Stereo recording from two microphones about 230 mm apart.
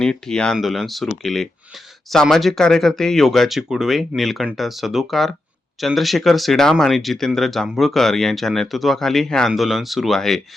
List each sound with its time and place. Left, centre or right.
0.0 s speech: centre